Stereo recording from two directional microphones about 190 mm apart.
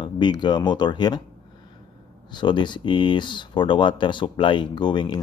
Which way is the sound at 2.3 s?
25° left (ahead or behind).